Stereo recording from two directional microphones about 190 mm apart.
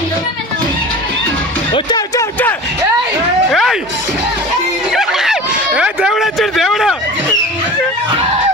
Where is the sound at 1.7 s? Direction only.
20° left (ahead or behind).